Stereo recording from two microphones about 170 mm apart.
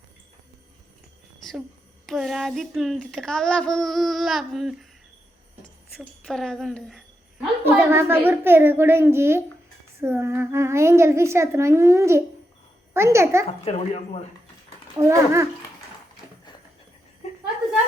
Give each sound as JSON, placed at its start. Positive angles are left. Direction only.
{"t": 2.0, "sound": "speech", "side_deg": 0}
{"t": 6.2, "sound": "speech", "side_deg": 5}
{"t": 7.6, "sound": "a woman's voice", "side_deg": -15}
{"t": 13.7, "sound": "speech", "side_deg": 35}
{"t": 14.9, "sound": "a woman's voice", "side_deg": -15}